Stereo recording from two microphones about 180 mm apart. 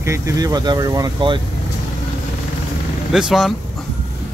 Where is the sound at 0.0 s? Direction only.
15° right (ahead or behind).